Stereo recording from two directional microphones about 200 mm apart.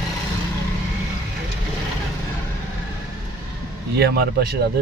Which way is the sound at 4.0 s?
55° right (ahead or behind).